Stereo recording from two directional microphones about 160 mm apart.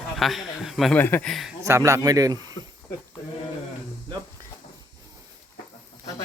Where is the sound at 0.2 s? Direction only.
Centre (ahead or behind).